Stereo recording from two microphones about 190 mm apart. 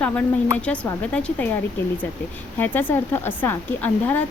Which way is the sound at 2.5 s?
10° left (ahead or behind).